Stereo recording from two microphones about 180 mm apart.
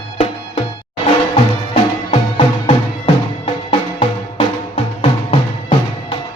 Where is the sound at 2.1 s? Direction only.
30° left (ahead or behind).